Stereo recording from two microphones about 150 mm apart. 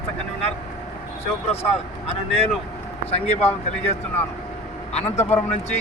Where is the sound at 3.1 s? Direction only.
45° left (ahead or behind).